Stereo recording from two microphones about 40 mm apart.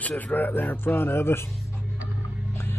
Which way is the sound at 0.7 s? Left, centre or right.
Left.